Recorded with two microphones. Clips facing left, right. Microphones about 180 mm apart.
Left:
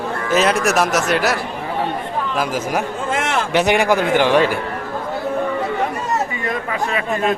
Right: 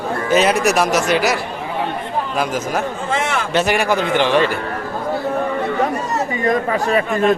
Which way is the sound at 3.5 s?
15° left (ahead or behind).